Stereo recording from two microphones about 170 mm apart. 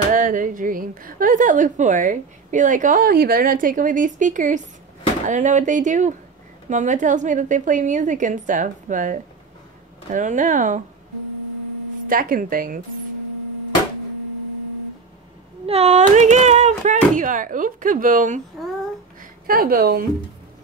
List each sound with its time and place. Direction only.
0.1 s a woman's voice: 50° right (ahead or behind)
12.1 s speech: 55° right (ahead or behind)
15.6 s a woman's voice: 40° right (ahead or behind)
19.4 s speech: 60° right (ahead or behind)